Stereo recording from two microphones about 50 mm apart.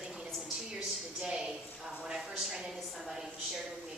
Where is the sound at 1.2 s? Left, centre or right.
Centre.